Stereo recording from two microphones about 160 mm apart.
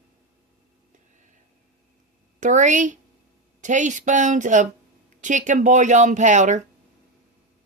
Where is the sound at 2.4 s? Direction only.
50° right (ahead or behind).